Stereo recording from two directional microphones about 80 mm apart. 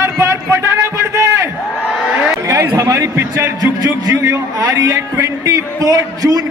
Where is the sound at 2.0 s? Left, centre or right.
Centre.